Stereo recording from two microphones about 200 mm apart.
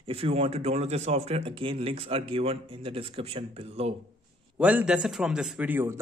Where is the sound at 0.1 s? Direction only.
30° right (ahead or behind).